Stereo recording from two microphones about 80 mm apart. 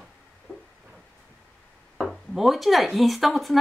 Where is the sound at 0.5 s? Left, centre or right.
Centre.